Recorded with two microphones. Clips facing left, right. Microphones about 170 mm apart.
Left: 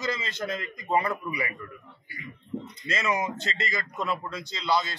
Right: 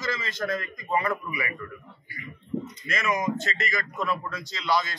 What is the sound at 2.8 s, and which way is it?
A man's voice, 30° left (ahead or behind).